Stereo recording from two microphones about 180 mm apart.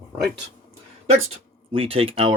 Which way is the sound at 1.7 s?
30° right (ahead or behind).